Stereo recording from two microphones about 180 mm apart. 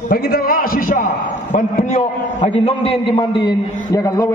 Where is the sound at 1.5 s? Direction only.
40° left (ahead or behind).